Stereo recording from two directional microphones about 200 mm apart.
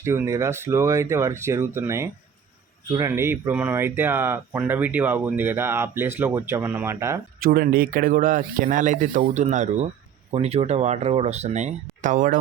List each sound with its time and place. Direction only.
0.0 s speech: 15° right (ahead or behind)
7.3 s speech: 45° right (ahead or behind)